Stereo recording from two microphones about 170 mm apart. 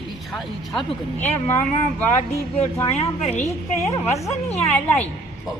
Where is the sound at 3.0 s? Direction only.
40° left (ahead or behind).